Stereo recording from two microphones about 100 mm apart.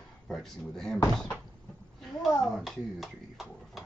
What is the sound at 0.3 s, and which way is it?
Speech, 5° left (ahead or behind).